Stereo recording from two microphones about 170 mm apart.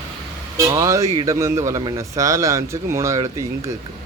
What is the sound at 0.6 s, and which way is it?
Speech, 20° right (ahead or behind).